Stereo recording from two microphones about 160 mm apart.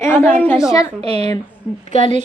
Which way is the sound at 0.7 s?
20° left (ahead or behind).